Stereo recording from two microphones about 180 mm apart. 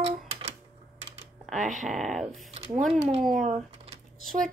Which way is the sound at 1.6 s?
45° right (ahead or behind).